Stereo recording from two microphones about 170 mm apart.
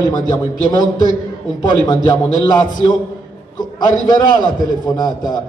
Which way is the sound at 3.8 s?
25° left (ahead or behind).